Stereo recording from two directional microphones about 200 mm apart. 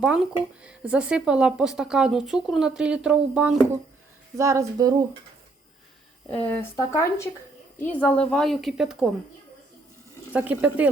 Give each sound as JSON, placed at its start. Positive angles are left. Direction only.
{"t": 0.0, "sound": "speech", "side_deg": -5}
{"t": 4.4, "sound": "speech", "side_deg": -15}
{"t": 6.3, "sound": "speech", "side_deg": 10}
{"t": 10.3, "sound": "speech", "side_deg": -5}